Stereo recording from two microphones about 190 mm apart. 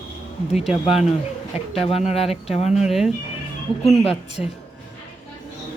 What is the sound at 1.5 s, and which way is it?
Speech, 30° left (ahead or behind).